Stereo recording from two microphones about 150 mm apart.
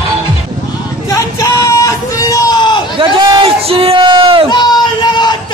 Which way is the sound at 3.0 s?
30° right (ahead or behind).